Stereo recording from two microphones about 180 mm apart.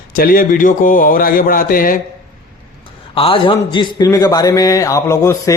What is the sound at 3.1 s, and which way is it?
A man's voice, 30° left (ahead or behind).